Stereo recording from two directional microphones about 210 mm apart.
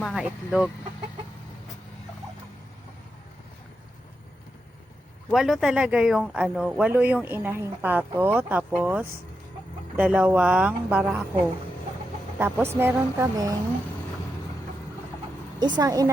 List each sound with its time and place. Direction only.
0.0 s speech: centre (ahead or behind)
5.3 s speech: centre (ahead or behind)
12.4 s speech: 10° right (ahead or behind)
15.8 s speech: 15° right (ahead or behind)